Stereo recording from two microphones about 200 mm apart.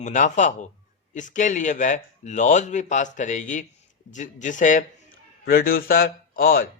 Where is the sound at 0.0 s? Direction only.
35° left (ahead or behind).